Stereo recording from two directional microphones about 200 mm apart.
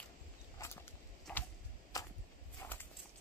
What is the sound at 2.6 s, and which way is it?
Walk, 10° left (ahead or behind).